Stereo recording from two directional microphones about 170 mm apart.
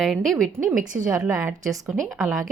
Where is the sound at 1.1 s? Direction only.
20° right (ahead or behind).